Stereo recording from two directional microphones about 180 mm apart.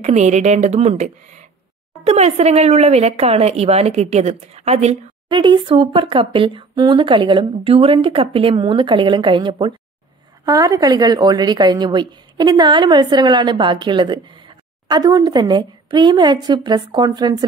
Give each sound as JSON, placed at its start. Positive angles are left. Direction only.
{"t": 0.0, "sound": "a woman's voice", "side_deg": -40}